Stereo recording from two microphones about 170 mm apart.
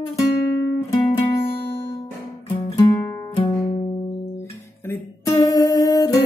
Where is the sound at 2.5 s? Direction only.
20° left (ahead or behind).